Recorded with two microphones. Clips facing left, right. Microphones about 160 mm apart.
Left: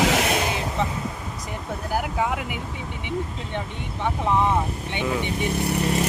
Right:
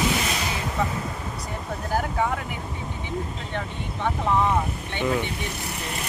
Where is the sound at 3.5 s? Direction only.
15° left (ahead or behind).